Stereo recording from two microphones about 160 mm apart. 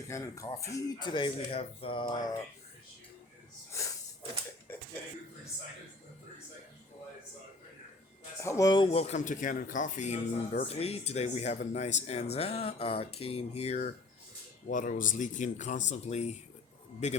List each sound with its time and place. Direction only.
0.1 s speech: 20° left (ahead or behind)
3.7 s a sound: 20° left (ahead or behind)
8.4 s speech: 20° left (ahead or behind); by 13.9 s 45° left (ahead or behind)
14.7 s speech: 55° left (ahead or behind)